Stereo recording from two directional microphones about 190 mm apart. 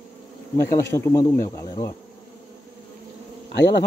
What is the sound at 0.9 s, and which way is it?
Speech, 15° left (ahead or behind).